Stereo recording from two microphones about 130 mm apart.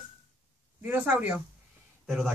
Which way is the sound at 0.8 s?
15° right (ahead or behind).